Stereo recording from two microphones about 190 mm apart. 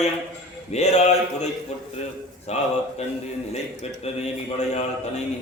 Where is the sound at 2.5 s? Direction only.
35° left (ahead or behind).